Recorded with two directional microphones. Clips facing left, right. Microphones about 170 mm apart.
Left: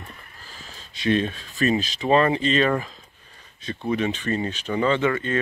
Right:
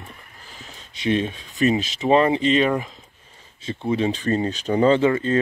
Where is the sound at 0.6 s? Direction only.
20° right (ahead or behind).